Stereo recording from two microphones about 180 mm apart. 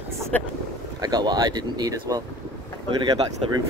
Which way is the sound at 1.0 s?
20° right (ahead or behind).